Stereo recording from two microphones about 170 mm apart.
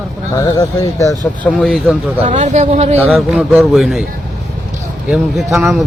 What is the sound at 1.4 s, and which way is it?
Speech, 5° left (ahead or behind).